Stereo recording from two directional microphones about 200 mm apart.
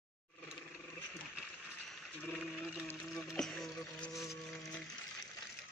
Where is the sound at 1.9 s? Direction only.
10° left (ahead or behind).